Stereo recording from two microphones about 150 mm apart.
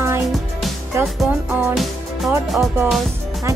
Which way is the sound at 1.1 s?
Centre (ahead or behind).